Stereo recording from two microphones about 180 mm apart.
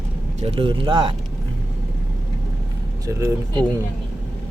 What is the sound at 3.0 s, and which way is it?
Speech, 15° right (ahead or behind).